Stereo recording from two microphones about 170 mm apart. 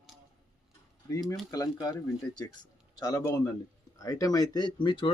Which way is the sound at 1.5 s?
20° left (ahead or behind).